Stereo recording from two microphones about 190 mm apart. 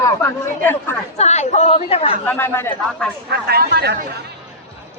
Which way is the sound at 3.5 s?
55° right (ahead or behind).